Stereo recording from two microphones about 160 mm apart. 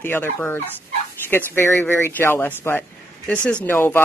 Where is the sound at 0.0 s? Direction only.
15° left (ahead or behind).